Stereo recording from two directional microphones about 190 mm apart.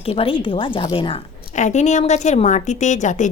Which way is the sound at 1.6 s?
40° left (ahead or behind).